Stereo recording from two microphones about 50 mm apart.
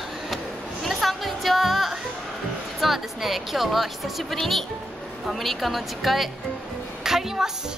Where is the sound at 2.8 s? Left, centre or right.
Centre.